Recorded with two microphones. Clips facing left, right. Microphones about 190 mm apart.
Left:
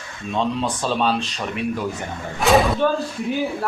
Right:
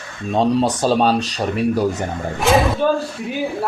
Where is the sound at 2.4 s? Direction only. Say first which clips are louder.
Even; centre (ahead or behind).